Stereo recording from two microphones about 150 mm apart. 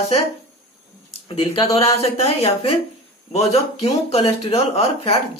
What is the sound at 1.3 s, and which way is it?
Speech, 35° left (ahead or behind).